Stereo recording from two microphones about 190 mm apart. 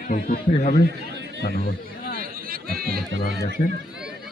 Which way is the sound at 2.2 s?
50° right (ahead or behind).